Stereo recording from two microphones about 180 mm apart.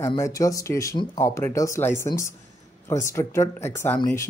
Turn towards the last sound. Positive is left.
turn(degrees=15)  # may be behind; listen again after turning